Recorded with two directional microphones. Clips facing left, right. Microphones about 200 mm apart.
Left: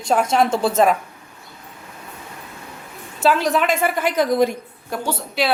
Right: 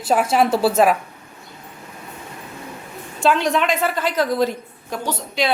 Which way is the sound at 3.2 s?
5° left (ahead or behind).